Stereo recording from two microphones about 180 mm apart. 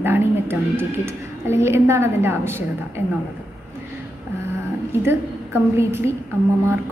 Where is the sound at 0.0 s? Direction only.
10° right (ahead or behind).